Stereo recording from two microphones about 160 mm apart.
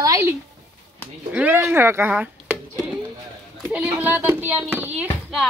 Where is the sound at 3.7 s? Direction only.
10° right (ahead or behind).